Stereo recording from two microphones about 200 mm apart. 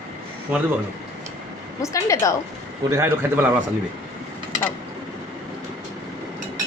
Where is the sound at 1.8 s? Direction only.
15° left (ahead or behind).